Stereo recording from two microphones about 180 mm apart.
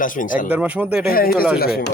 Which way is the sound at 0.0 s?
50° left (ahead or behind).